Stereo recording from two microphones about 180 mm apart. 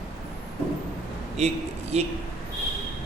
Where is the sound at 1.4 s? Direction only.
35° right (ahead or behind).